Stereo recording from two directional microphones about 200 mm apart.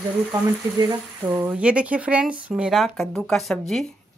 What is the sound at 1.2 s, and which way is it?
A woman's voice, 10° right (ahead or behind).